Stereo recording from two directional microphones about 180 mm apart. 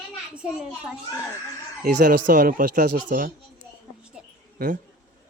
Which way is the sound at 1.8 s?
50° right (ahead or behind).